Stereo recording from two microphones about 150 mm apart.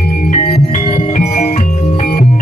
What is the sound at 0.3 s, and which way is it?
Music, 50° left (ahead or behind).